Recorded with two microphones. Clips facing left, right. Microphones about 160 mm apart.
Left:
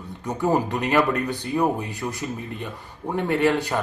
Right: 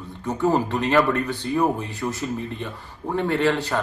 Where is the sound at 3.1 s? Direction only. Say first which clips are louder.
Even; 15° left (ahead or behind).